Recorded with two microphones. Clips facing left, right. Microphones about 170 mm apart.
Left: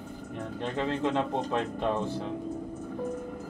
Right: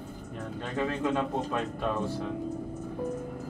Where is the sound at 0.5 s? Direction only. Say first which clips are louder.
Left 1 dB; 20° left (ahead or behind).